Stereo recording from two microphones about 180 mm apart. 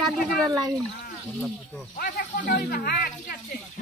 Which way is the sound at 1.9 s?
55° left (ahead or behind).